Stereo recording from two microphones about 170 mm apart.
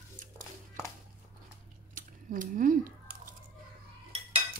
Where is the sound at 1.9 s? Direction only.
50° right (ahead or behind).